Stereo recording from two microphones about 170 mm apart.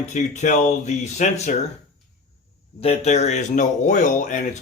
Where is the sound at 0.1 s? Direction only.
45° left (ahead or behind).